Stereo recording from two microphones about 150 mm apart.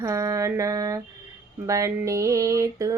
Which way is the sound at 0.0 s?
20° right (ahead or behind).